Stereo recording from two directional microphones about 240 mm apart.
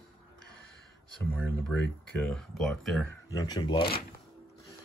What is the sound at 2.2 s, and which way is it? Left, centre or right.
Speech, centre.